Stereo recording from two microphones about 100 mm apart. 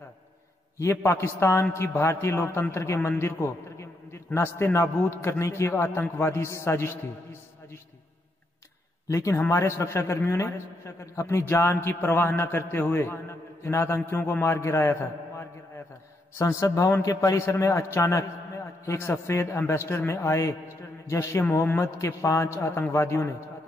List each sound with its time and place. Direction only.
0.7 s a man's voice: 25° left (ahead or behind)
9.0 s a man's voice: 30° left (ahead or behind)